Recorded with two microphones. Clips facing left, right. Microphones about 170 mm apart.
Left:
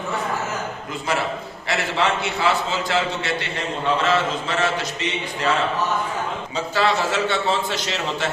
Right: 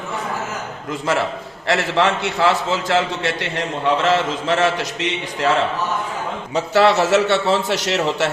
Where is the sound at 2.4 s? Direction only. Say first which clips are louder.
Right 5 dB; 75° right (ahead or behind).